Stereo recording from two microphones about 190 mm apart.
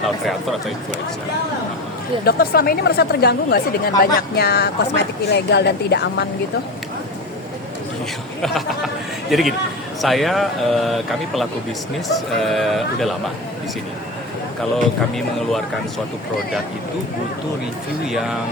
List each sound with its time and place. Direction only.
2.2 s speech: 55° left (ahead or behind)
8.4 s speech: centre (ahead or behind)
14.6 s speech: centre (ahead or behind)
18.1 s speech: centre (ahead or behind)